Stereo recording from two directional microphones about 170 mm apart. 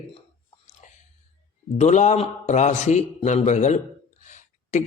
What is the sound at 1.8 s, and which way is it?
Speech, 45° left (ahead or behind).